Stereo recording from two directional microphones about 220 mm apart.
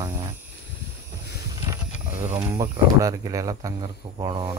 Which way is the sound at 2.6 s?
15° right (ahead or behind).